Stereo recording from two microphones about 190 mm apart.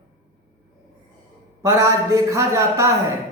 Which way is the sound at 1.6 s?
15° right (ahead or behind).